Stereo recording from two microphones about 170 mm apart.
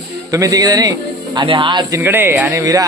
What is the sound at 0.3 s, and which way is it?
Speech, 20° right (ahead or behind).